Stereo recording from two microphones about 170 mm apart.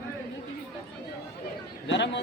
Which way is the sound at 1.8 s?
90° left.